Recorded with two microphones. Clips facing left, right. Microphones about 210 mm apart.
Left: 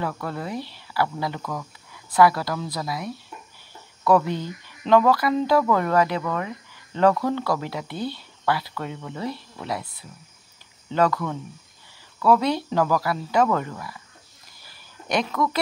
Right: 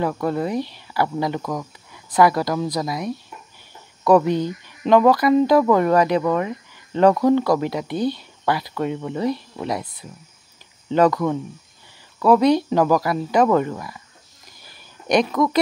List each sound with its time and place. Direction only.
0.0 s speech: 20° right (ahead or behind)
11.0 s speech: 15° right (ahead or behind)
15.0 s speech: 15° right (ahead or behind)